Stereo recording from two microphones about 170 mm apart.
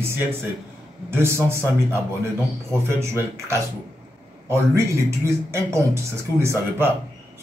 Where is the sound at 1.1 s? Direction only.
15° right (ahead or behind).